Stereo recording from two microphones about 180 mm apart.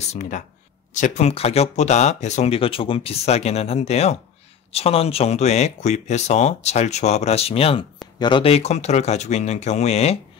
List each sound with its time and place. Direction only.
0.1 s speech: 40° left (ahead or behind)